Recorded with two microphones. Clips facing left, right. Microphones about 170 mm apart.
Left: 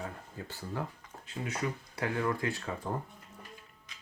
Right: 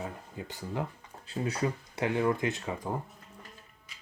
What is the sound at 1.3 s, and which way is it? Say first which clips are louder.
Speech: right 4 dB; 30° right (ahead or behind).